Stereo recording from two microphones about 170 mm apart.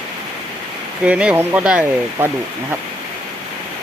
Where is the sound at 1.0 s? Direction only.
5° right (ahead or behind).